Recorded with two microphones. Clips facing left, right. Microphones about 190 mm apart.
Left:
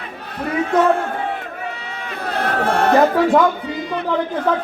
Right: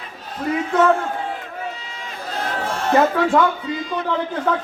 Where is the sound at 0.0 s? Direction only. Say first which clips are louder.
Even; 65° left (ahead or behind).